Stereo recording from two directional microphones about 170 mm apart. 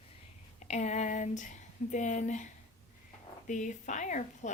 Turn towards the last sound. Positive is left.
turn(degrees=45)  # may be behind; listen again after turning